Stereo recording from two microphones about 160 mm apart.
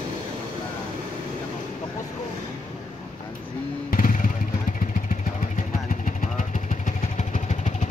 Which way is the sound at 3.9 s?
55° left (ahead or behind).